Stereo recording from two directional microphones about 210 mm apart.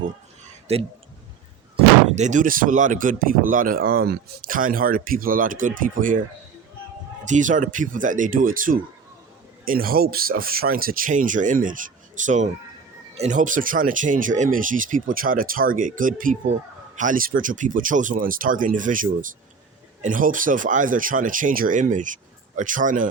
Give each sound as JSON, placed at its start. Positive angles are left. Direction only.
{"t": 0.7, "sound": "speech", "side_deg": -30}
{"t": 2.0, "sound": "speech", "side_deg": -35}
{"t": 7.3, "sound": "speech", "side_deg": -35}